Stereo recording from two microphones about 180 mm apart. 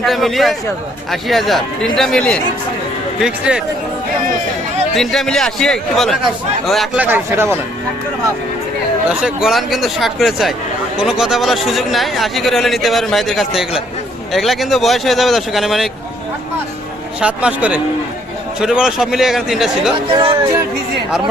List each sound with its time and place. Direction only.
0.0 s speech: centre (ahead or behind)
4.9 s a man's voice: centre (ahead or behind); by 7.6 s 15° right (ahead or behind)
9.0 s speech: 5° right (ahead or behind)
17.2 s a man's voice: 5° right (ahead or behind)
20.1 s speech: 25° right (ahead or behind)